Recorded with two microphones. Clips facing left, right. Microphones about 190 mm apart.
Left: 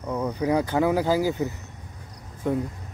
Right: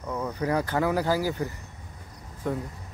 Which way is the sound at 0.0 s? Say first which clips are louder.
Left 3 dB; 15° left (ahead or behind).